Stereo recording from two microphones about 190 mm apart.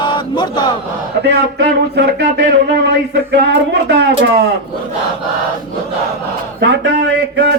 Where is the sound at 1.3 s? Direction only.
65° right (ahead or behind).